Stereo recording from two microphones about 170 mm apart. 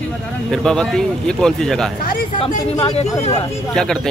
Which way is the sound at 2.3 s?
35° left (ahead or behind).